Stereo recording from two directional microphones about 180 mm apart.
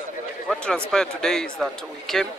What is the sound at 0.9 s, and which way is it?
A man's voice, 5° left (ahead or behind).